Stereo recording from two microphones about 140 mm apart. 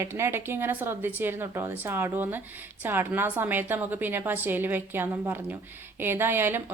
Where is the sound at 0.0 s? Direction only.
20° right (ahead or behind).